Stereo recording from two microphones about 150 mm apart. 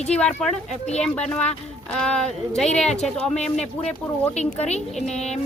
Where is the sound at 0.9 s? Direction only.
45° left (ahead or behind).